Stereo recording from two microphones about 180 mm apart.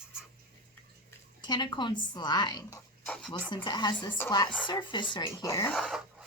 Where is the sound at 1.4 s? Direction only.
25° left (ahead or behind).